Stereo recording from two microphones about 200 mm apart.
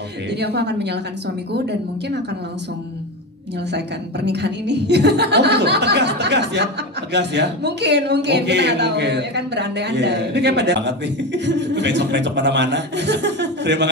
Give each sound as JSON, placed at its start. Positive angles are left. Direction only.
{"t": 0.3, "sound": "speech", "side_deg": -55}
{"t": 3.7, "sound": "speech", "side_deg": -60}